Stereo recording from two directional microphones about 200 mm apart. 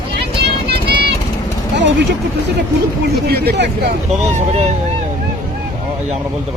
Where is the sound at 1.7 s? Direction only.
60° right (ahead or behind).